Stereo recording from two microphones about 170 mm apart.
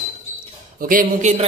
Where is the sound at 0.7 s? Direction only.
55° right (ahead or behind).